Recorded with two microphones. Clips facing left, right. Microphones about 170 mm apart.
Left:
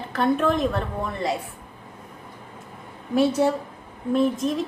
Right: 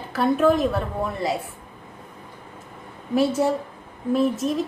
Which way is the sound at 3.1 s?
Centre (ahead or behind).